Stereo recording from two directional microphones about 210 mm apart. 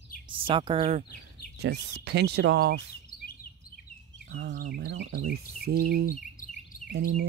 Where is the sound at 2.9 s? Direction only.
45° left (ahead or behind).